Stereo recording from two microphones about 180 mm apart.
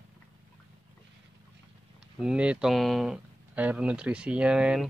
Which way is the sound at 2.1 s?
5° right (ahead or behind).